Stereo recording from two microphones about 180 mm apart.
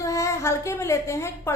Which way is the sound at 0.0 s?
15° left (ahead or behind).